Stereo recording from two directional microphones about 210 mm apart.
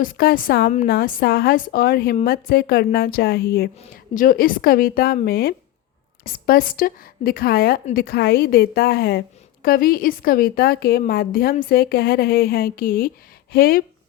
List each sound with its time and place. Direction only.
0.0 s a woman's voice: 45° left (ahead or behind)
3.8 s a woman's voice: 40° left (ahead or behind)